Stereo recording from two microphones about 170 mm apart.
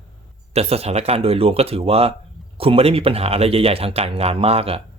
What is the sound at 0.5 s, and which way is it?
Speech, 35° right (ahead or behind).